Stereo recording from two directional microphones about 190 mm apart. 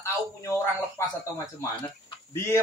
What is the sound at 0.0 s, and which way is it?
Speech, 15° left (ahead or behind).